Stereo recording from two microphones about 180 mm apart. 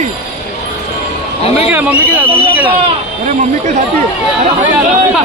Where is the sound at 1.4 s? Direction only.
35° left (ahead or behind).